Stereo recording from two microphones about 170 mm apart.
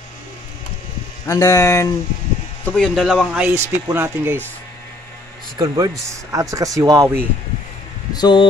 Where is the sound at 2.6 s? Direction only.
5° left (ahead or behind); by 4.4 s 15° right (ahead or behind).